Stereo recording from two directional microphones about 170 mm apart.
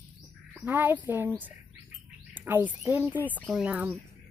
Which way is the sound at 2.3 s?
10° right (ahead or behind).